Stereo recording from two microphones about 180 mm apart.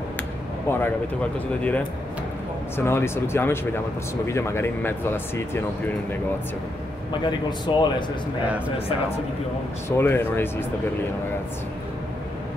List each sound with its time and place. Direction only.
0.7 s speech: 10° left (ahead or behind)
7.2 s a man's voice: 25° left (ahead or behind)
9.8 s speech: 10° left (ahead or behind)